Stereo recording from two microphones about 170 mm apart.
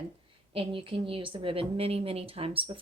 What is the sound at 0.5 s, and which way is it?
A woman's voice, 30° right (ahead or behind).